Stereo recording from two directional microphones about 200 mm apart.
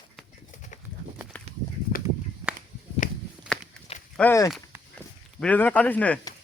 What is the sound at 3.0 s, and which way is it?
Walk, 40° left (ahead or behind).